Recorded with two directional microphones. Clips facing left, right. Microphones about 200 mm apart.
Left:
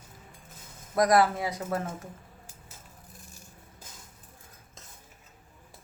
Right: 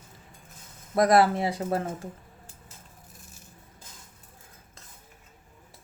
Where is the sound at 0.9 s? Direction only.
25° right (ahead or behind).